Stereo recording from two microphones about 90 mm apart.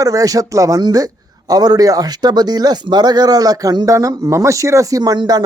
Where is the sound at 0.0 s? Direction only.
40° right (ahead or behind).